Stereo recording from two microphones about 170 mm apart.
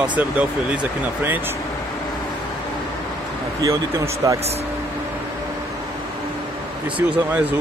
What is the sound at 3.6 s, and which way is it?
Speech, 20° right (ahead or behind).